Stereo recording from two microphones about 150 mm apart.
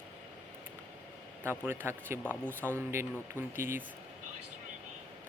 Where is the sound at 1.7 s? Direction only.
15° right (ahead or behind).